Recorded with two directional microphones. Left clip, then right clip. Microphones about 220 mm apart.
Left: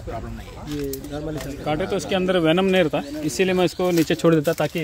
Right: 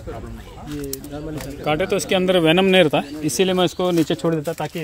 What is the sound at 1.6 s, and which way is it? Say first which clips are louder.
Speech: right 4 dB; 45° right (ahead or behind).